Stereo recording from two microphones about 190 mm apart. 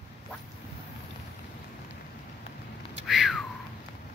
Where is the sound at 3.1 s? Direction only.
Centre (ahead or behind).